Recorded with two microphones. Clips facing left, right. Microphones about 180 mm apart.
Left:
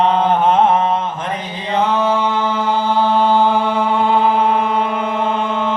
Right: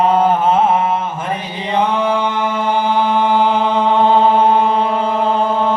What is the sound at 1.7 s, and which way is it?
A capella, 15° right (ahead or behind).